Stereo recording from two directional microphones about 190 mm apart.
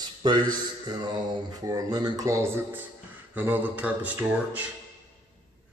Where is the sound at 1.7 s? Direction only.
20° right (ahead or behind).